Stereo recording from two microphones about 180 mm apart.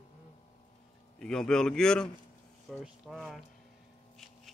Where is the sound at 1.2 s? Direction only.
5° left (ahead or behind).